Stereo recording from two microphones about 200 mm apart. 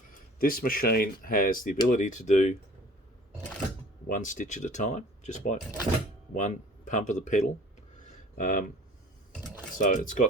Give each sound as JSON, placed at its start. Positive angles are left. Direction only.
{"t": 0.1, "sound": "speech", "side_deg": 45}
{"t": 4.1, "sound": "speech", "side_deg": 40}
{"t": 9.7, "sound": "speech", "side_deg": 40}